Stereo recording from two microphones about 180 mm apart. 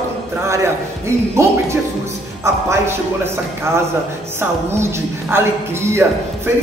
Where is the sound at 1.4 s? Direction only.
15° right (ahead or behind).